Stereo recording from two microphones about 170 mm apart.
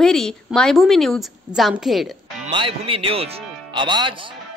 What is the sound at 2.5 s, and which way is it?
A man's voice, 30° right (ahead or behind).